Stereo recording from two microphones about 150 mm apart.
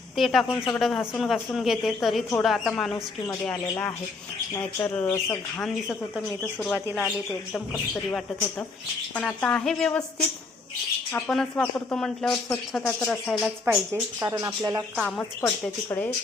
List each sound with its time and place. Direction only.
0.2 s speech: centre (ahead or behind)
4.5 s speech: 10° left (ahead or behind)
6.7 s speech: 10° right (ahead or behind)
9.1 s speech: 10° left (ahead or behind)
11.3 s speech: 5° left (ahead or behind)
13.7 s speech: 15° right (ahead or behind)
14.9 s speech: 5° left (ahead or behind)
15.4 s speech: 15° left (ahead or behind)